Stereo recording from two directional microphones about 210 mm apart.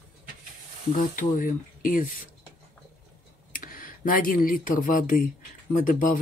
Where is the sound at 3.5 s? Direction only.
40° left (ahead or behind).